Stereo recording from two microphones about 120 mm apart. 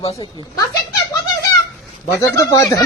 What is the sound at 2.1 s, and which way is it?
Speech, 25° left (ahead or behind).